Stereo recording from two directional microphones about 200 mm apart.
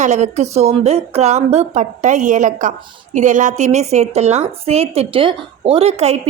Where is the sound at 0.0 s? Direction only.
35° right (ahead or behind).